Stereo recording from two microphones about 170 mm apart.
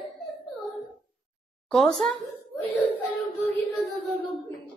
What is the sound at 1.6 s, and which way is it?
Speech, 5° left (ahead or behind).